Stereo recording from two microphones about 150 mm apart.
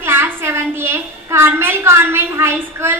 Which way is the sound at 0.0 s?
15° right (ahead or behind).